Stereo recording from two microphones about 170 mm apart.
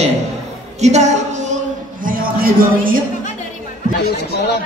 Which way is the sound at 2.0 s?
55° right (ahead or behind).